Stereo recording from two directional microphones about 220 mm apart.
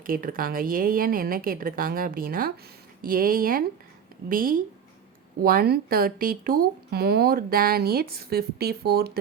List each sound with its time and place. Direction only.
0.0 s a woman's voice: 40° right (ahead or behind)